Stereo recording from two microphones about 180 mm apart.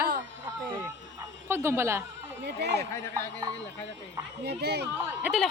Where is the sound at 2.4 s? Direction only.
70° right (ahead or behind).